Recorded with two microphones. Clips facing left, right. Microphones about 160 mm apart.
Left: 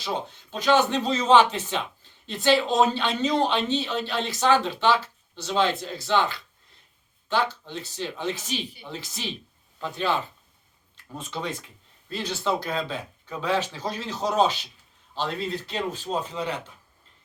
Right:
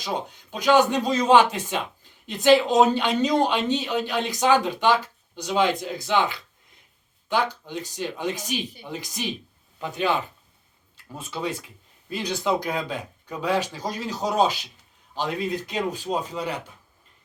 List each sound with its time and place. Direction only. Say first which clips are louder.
0.0 s speech: right 1 dB; 15° right (ahead or behind)